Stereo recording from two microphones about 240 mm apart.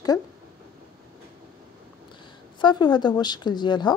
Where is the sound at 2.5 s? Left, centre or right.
Centre.